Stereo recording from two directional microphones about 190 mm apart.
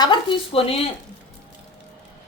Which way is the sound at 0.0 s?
25° left (ahead or behind).